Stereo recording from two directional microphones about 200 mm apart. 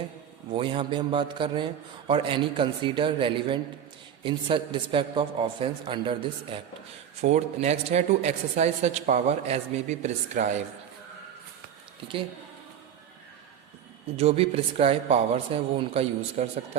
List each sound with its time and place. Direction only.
0.5 s a man's voice: 25° right (ahead or behind)
14.2 s a man's voice: 30° right (ahead or behind)